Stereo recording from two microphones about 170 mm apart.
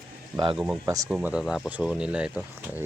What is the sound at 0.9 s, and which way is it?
Speech, 20° right (ahead or behind).